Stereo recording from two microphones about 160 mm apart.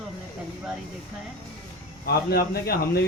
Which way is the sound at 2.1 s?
75° left (ahead or behind).